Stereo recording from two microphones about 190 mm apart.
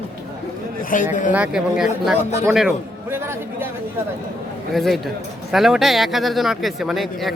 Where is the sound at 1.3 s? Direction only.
5° right (ahead or behind).